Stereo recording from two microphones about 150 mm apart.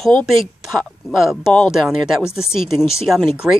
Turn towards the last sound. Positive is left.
turn(degrees=-5)  # may be behind; listen again after turning